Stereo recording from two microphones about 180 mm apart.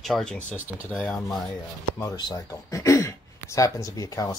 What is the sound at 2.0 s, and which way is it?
Speech, 20° left (ahead or behind).